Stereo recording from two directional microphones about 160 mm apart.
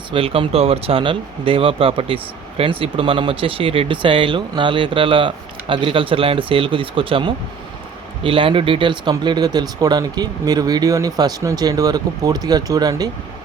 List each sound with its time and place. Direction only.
0.1 s speech: 35° right (ahead or behind)